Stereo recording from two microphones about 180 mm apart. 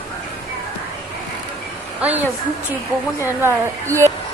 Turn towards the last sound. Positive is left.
turn(degrees=-15)  # may be behind; listen again after turning